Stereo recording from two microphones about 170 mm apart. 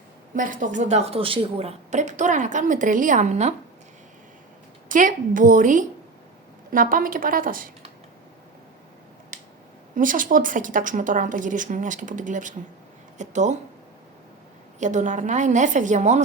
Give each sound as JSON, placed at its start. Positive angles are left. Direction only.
{"t": 0.3, "sound": "a woman's voice", "side_deg": -50}
{"t": 4.9, "sound": "a woman's voice", "side_deg": -50}
{"t": 9.9, "sound": "a woman's voice", "side_deg": -50}
{"t": 14.8, "sound": "a woman's voice", "side_deg": -45}